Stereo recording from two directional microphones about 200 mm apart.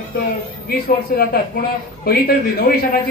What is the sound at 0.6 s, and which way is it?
Speech, 50° left (ahead or behind).